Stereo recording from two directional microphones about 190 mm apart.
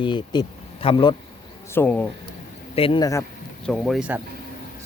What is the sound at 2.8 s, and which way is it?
Speech, 25° left (ahead or behind).